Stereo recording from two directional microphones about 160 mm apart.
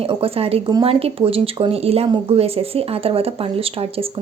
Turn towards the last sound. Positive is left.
turn(degrees=-35)  # may be behind; listen again after turning